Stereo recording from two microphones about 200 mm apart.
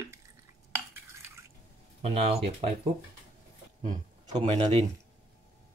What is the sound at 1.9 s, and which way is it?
Speech, 30° right (ahead or behind).